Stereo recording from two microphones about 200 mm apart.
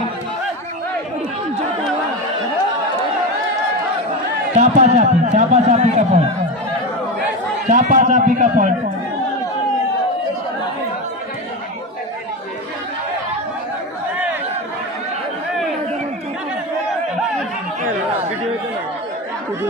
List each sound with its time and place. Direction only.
4.5 s speech: 35° right (ahead or behind)
7.7 s speech: 40° right (ahead or behind)